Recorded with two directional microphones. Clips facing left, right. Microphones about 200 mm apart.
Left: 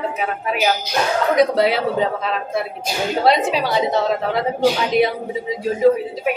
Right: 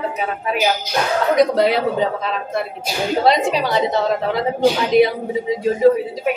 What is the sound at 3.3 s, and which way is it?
A woman's voice, centre (ahead or behind).